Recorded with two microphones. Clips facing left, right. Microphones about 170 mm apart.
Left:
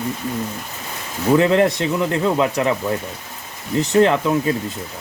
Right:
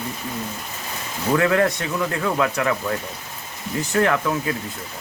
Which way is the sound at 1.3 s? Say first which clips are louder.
Left 4 dB; 20° left (ahead or behind).